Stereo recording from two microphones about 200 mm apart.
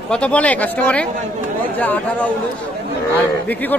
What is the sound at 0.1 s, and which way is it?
Speech, 5° left (ahead or behind).